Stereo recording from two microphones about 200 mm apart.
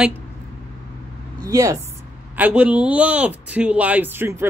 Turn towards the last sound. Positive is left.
turn(degrees=-10)  # may be behind; listen again after turning